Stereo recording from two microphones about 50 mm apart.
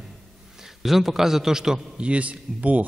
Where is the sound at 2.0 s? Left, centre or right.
Right.